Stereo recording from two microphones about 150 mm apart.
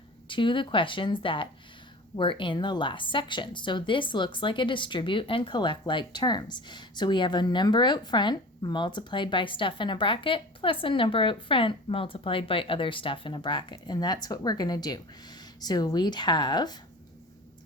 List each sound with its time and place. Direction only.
0.3 s a woman's voice: 35° left (ahead or behind)